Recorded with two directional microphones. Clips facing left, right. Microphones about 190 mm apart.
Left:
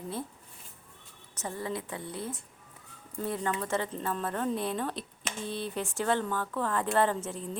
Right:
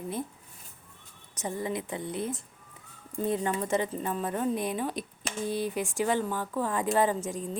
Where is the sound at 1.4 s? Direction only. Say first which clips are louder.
Right 3 dB; 15° right (ahead or behind).